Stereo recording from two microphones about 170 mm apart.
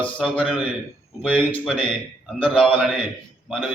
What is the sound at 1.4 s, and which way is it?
Speech, 30° left (ahead or behind).